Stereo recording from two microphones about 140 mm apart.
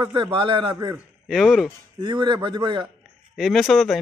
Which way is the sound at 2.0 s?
35° right (ahead or behind).